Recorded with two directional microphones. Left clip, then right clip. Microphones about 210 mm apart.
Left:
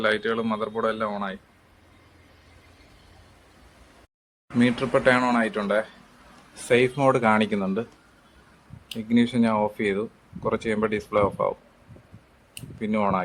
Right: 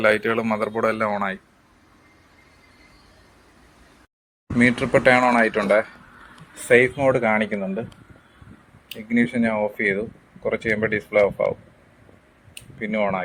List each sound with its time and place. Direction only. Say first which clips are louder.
0.0 s speech: right 5 dB; 5° right (ahead or behind)
4.5 s speech: right 4 dB; centre (ahead or behind)
6.7 s speech: right 4 dB; 10° left (ahead or behind)
9.0 s speech: right 1 dB; 15° left (ahead or behind)
12.8 s speech: right 1 dB; 15° left (ahead or behind)